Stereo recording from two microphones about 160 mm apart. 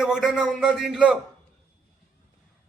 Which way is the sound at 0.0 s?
5° right (ahead or behind).